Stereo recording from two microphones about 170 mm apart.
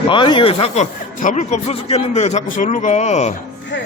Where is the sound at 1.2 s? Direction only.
45° left (ahead or behind).